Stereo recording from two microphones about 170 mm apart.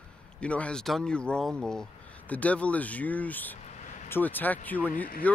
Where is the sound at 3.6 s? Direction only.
40° left (ahead or behind).